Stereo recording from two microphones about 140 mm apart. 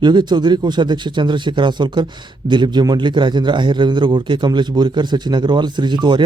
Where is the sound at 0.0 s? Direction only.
30° right (ahead or behind).